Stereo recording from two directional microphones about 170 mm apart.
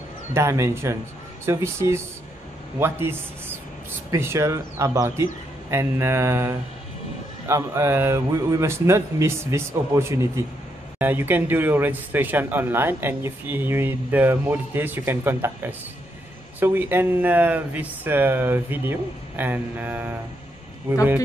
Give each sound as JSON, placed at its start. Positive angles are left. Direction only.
{"t": 0.3, "sound": "speech", "side_deg": -15}